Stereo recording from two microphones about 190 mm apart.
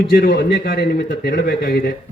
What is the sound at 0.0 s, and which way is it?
A man's voice, 60° left (ahead or behind).